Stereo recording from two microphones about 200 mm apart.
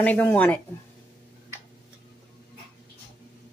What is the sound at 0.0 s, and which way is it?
Speech, 10° left (ahead or behind).